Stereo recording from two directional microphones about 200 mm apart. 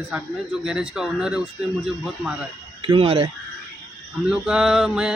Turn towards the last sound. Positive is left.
turn(degrees=0)  # may be behind; listen again after turning